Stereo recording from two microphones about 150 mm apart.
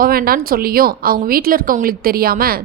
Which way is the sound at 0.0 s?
80° right.